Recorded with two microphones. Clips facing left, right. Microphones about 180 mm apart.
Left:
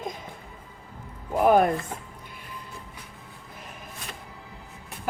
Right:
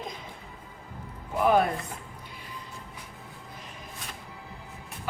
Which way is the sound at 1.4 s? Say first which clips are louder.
Left 3 dB; 50° left (ahead or behind).